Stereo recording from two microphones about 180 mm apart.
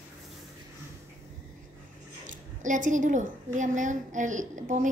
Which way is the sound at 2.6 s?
45° right (ahead or behind).